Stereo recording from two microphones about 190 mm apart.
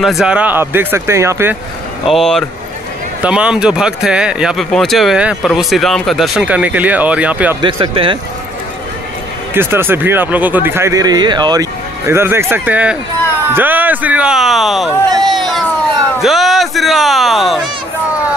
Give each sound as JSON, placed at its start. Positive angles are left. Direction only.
{"t": 0.0, "sound": "speech", "side_deg": 0}
{"t": 2.0, "sound": "speech", "side_deg": 0}
{"t": 7.6, "sound": "speech", "side_deg": -25}
{"t": 9.5, "sound": "speech", "side_deg": -10}
{"t": 15.0, "sound": "a sound", "side_deg": -20}
{"t": 15.3, "sound": "a sound", "side_deg": 0}
{"t": 16.2, "sound": "a man's voice", "side_deg": 0}